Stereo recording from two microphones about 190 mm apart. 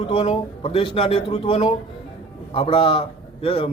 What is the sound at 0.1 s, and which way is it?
A man's voice, 30° left (ahead or behind).